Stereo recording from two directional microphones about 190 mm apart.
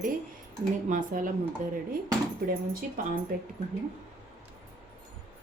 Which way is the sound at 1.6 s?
40° right (ahead or behind).